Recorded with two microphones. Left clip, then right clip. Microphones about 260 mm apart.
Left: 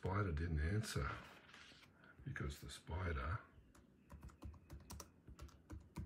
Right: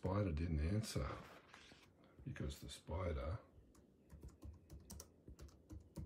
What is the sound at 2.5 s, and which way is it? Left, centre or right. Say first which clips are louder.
Speech: right 2 dB; right.